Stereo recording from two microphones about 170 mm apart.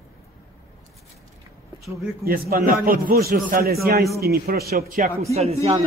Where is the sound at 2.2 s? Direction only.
60° right (ahead or behind).